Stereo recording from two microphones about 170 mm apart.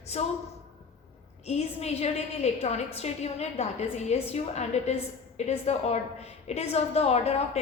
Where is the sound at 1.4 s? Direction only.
40° left (ahead or behind).